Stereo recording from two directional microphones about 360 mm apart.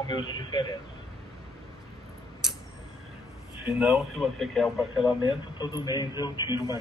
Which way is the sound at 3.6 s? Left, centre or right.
Centre.